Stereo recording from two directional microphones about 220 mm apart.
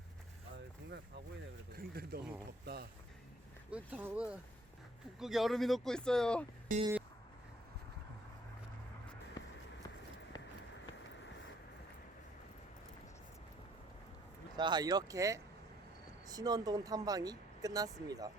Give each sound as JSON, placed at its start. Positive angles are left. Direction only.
{"t": 0.5, "sound": "a sound", "side_deg": -50}
{"t": 1.7, "sound": "speech", "side_deg": -45}
{"t": 3.7, "sound": "speech", "side_deg": -5}
{"t": 6.7, "sound": "music", "side_deg": -35}
{"t": 10.3, "sound": "run", "side_deg": 20}
{"t": 14.5, "sound": "speech", "side_deg": -20}